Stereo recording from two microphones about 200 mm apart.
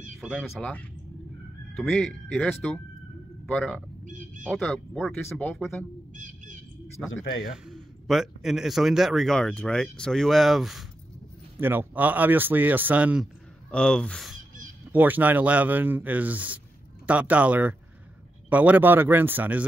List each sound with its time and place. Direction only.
0.2 s speech: centre (ahead or behind)
4.0 s a sound: 40° right (ahead or behind)
4.5 s speech: 5° left (ahead or behind)
6.1 s bird: 40° right (ahead or behind)
7.5 s speech: centre (ahead or behind)
13.7 s speech: 5° left (ahead or behind)